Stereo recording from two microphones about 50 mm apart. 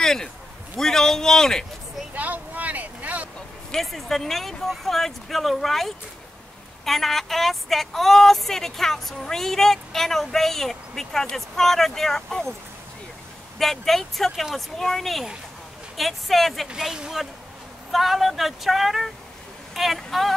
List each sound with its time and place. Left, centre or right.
0.0 s a sound: centre
0.7 s a man's voice: centre
2.1 s vehicle: right
3.7 s speech: centre
13.6 s speech: centre
16.7 s speech: centre